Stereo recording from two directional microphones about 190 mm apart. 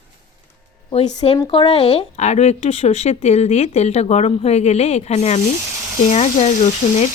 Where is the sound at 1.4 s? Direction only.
25° left (ahead or behind).